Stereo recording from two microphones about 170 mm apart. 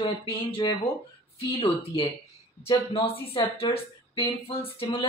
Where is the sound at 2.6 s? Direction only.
30° left (ahead or behind).